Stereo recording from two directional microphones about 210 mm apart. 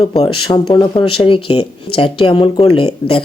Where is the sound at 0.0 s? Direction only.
25° left (ahead or behind).